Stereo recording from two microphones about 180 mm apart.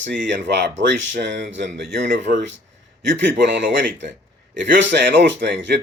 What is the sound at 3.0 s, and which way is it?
Speech, 85° right.